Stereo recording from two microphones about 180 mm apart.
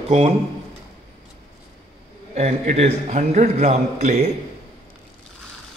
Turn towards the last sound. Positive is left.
turn(degrees=-40)  # may be behind; listen again after turning